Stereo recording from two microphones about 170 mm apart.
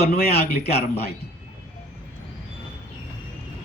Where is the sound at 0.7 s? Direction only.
35° left (ahead or behind).